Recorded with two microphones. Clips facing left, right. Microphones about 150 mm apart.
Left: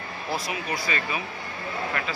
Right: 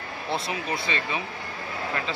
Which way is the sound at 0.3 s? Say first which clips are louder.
Right 1 dB; 25° right (ahead or behind).